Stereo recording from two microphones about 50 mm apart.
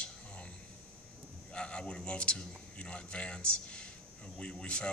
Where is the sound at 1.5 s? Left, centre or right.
Left.